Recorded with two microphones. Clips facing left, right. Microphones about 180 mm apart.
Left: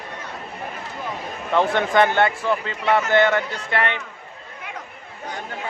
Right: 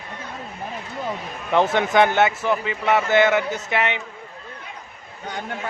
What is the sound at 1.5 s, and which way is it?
Speech, 15° right (ahead or behind).